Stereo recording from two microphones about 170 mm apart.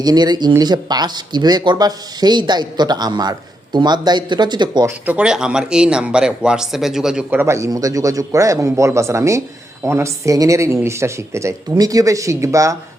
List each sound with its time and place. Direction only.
0.0 s speech: 25° right (ahead or behind)
5.0 s speech: 5° right (ahead or behind)